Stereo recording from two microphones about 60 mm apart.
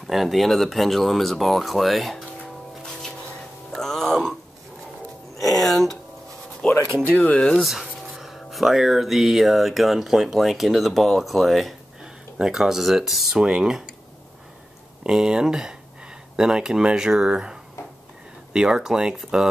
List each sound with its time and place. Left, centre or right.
0.0 s speech: centre
2.8 s music: centre
5.6 s a sound: centre
6.6 s a sound: centre
7.2 s speech: left
8.2 s speech: centre
12.0 s speech: centre
15.0 s speech: centre